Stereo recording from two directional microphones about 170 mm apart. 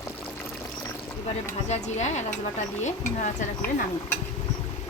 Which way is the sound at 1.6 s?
45° left (ahead or behind).